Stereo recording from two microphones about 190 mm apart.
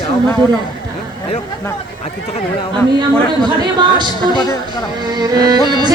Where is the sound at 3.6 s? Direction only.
25° right (ahead or behind).